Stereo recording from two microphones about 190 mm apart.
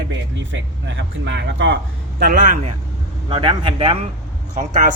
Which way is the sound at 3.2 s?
25° right (ahead or behind).